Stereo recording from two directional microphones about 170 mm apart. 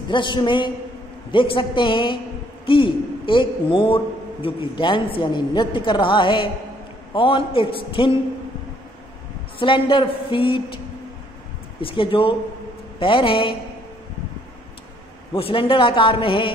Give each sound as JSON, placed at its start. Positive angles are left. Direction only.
{"t": 0.1, "sound": "a man's voice", "side_deg": 25}
{"t": 9.6, "sound": "a man's voice", "side_deg": 30}
{"t": 11.8, "sound": "a man's voice", "side_deg": 30}
{"t": 15.3, "sound": "a man's voice", "side_deg": 35}